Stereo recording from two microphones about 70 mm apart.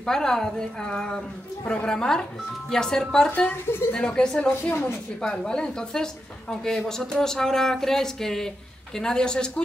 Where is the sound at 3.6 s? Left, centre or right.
Left.